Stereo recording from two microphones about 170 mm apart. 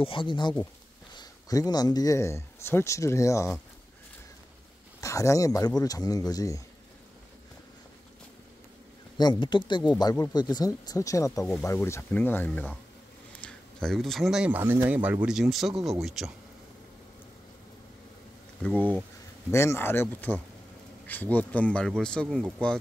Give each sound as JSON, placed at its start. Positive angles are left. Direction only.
{"t": 0.0, "sound": "speech", "side_deg": 30}
{"t": 5.0, "sound": "speech", "side_deg": 20}
{"t": 9.2, "sound": "speech", "side_deg": 25}
{"t": 18.6, "sound": "speech", "side_deg": 10}